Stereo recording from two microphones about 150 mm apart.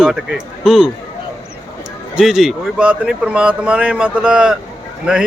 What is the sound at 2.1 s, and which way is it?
A man's voice, centre (ahead or behind).